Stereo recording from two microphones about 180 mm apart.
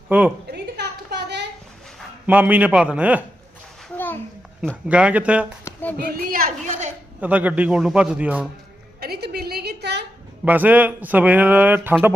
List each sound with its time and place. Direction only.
0.1 s a man's voice: 10° right (ahead or behind)
0.5 s a sound: 65° right (ahead or behind)
2.2 s a man's voice: 10° right (ahead or behind)
3.9 s a sound: 10° left (ahead or behind)
4.9 s a man's voice: 5° right (ahead or behind)
5.7 s child singing: 15° left (ahead or behind)
6.0 s a child's voice: 55° right (ahead or behind)
7.2 s a man's voice: 10° right (ahead or behind)
9.0 s a sound: 60° right (ahead or behind)
10.4 s a man's voice: 10° right (ahead or behind)